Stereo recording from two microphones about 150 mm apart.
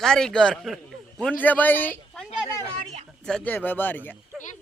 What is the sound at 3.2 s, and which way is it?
Speech, 5° left (ahead or behind).